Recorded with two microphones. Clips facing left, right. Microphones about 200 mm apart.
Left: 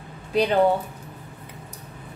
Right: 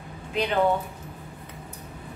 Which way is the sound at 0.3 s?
40° left (ahead or behind).